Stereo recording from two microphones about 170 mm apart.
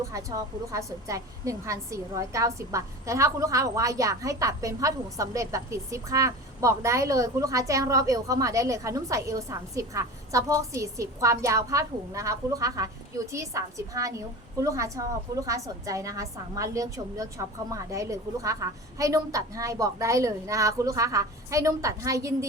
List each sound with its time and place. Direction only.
0.0 s a woman's voice: 20° right (ahead or behind)